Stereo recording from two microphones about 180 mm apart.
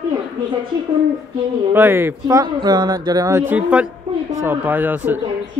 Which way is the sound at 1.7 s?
15° right (ahead or behind).